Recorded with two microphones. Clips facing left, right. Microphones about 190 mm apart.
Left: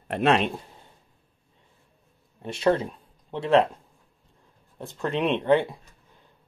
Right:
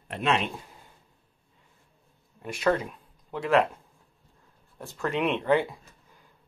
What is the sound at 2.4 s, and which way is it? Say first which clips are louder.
Speech: left 3 dB; 25° left (ahead or behind).